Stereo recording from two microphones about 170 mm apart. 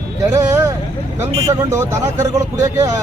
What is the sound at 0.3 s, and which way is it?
A man's voice, 15° right (ahead or behind).